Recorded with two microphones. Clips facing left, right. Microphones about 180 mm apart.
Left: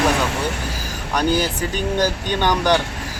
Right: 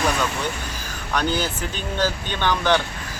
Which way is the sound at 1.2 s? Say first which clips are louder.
Left 4 dB; 10° left (ahead or behind).